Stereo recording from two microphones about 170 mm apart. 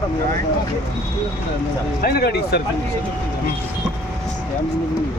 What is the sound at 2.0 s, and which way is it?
Speech, 65° left (ahead or behind).